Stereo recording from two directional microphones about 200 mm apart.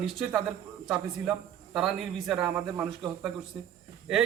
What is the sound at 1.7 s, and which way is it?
Speech, centre (ahead or behind).